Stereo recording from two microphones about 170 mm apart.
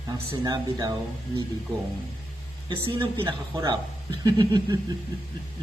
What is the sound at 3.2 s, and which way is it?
A woman's voice, 25° right (ahead or behind).